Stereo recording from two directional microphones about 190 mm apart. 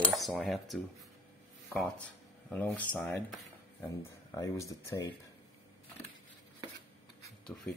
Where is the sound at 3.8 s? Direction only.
15° left (ahead or behind).